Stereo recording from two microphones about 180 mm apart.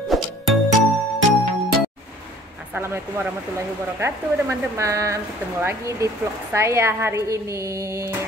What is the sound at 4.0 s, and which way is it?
Speech, 15° right (ahead or behind).